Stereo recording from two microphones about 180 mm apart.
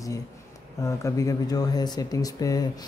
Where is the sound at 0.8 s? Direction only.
15° left (ahead or behind).